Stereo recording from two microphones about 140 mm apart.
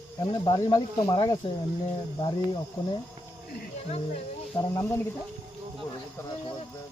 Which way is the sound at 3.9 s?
45° left (ahead or behind).